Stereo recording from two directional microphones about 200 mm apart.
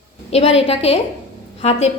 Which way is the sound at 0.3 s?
30° left (ahead or behind).